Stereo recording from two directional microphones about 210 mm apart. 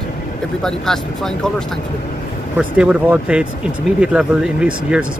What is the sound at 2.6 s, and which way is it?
Speech, 5° right (ahead or behind).